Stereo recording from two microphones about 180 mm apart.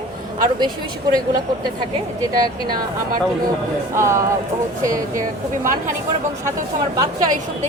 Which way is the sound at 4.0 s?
15° right (ahead or behind).